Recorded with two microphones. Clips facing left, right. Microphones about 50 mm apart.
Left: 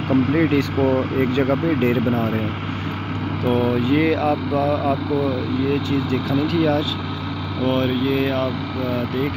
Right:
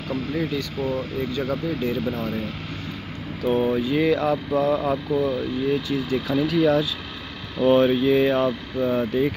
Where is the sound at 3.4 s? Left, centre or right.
Left.